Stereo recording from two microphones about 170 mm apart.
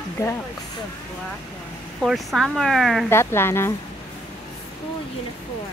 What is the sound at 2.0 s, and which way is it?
Speech, centre (ahead or behind).